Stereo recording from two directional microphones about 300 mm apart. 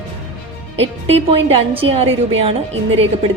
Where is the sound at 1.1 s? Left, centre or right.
Centre.